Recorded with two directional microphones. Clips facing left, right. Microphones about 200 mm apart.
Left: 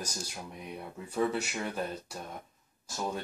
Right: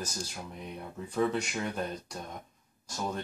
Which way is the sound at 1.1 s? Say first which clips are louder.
Right 1 dB; 5° left (ahead or behind).